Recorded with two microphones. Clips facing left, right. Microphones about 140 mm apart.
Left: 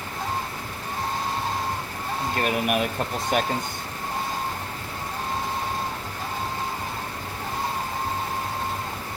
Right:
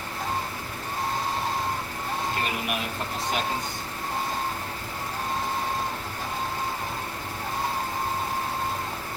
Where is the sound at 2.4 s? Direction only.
55° left (ahead or behind).